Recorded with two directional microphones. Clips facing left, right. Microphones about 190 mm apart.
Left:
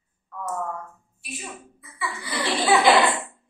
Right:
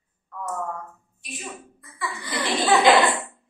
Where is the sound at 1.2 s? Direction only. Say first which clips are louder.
Right 1 dB; 10° left (ahead or behind).